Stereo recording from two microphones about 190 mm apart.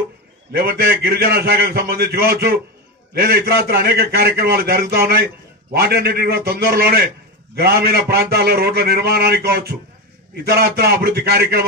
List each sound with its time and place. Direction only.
0.5 s a man's voice: 55° right (ahead or behind)